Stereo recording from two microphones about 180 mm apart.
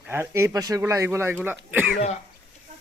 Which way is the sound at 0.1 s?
15° right (ahead or behind).